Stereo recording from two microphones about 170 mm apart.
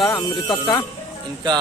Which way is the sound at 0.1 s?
25° left (ahead or behind).